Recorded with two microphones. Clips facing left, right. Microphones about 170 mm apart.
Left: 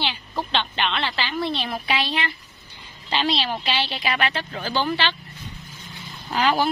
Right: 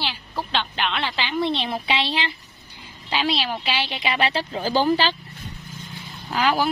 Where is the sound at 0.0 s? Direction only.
5° right (ahead or behind); by 2.3 s 30° right (ahead or behind).